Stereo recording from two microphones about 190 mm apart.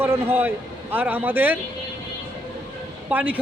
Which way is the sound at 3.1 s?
10° right (ahead or behind).